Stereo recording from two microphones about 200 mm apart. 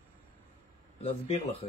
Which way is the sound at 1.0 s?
30° left (ahead or behind).